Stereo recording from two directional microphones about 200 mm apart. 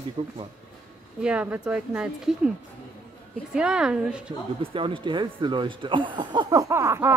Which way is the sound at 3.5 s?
5° right (ahead or behind).